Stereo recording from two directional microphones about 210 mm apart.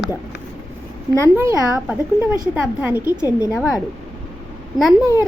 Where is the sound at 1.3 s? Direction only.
5° right (ahead or behind).